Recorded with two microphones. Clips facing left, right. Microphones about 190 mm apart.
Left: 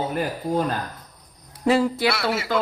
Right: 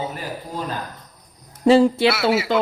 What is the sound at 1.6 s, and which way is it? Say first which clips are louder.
Speech: right 6 dB; 30° right (ahead or behind).